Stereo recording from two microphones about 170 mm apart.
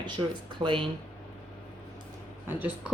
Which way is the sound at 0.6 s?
30° right (ahead or behind).